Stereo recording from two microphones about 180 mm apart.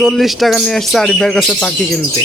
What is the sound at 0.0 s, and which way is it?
Speech, centre (ahead or behind).